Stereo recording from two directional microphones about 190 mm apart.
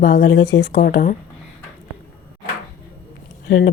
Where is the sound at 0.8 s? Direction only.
45° left (ahead or behind).